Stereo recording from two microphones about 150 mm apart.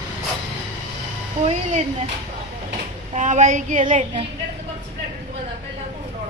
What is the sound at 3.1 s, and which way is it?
Child singing, 55° right (ahead or behind).